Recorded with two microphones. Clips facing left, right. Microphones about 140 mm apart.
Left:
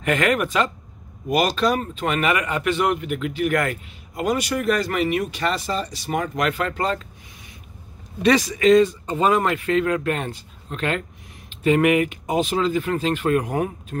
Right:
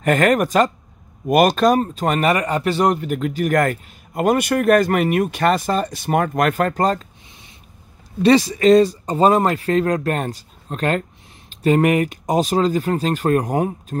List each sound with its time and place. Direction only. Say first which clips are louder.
0.0 s speech: right 5 dB; 40° right (ahead or behind)
8.2 s speech: right 4 dB; 30° right (ahead or behind)